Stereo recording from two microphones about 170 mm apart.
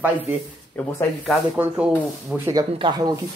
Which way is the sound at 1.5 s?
10° right (ahead or behind).